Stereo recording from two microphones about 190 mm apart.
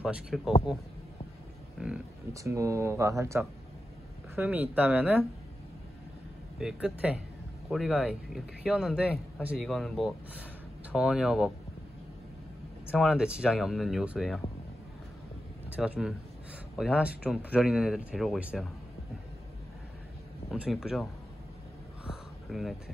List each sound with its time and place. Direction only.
0.0 s speech: 5° right (ahead or behind)
2.3 s speech: 15° right (ahead or behind)
6.6 s speech: 5° right (ahead or behind)
12.9 s speech: 5° right (ahead or behind)
15.7 s speech: 5° right (ahead or behind)
20.5 s speech: 5° right (ahead or behind)
22.5 s speech: centre (ahead or behind)